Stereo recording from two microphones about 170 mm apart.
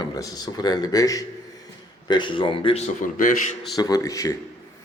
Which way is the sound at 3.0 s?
50° left (ahead or behind).